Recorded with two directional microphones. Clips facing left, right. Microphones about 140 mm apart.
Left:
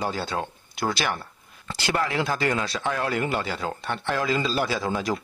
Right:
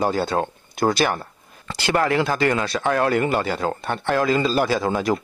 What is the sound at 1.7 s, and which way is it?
Speech, 65° right (ahead or behind).